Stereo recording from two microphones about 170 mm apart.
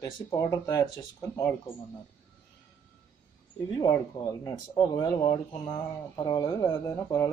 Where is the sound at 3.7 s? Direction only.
25° left (ahead or behind).